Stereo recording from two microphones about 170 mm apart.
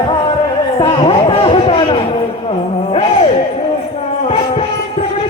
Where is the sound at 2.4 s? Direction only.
35° left (ahead or behind).